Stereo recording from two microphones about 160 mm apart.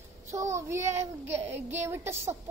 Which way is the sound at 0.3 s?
20° right (ahead or behind).